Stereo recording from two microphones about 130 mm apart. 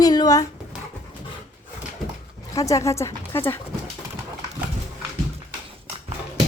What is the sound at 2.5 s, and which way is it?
Speech, 25° left (ahead or behind).